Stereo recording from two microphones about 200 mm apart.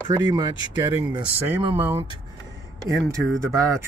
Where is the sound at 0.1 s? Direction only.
20° right (ahead or behind).